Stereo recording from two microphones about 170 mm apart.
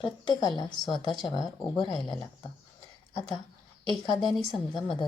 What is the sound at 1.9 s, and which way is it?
Speech, centre (ahead or behind).